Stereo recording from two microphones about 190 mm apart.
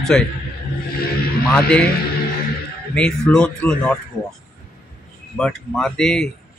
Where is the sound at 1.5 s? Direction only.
5° left (ahead or behind).